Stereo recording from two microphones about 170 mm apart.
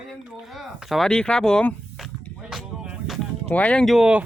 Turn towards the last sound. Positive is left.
turn(degrees=-5)  # may be behind; listen again after turning